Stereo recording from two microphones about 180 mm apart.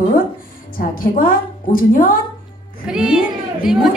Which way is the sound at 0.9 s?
50° left (ahead or behind).